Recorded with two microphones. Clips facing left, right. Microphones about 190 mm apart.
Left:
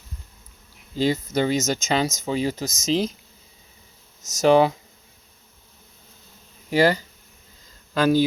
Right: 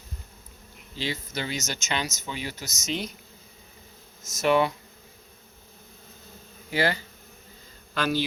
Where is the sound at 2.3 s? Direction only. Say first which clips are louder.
Left 11 dB; 35° left (ahead or behind).